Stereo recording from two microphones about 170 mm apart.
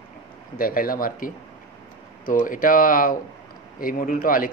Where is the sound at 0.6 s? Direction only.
55° left (ahead or behind).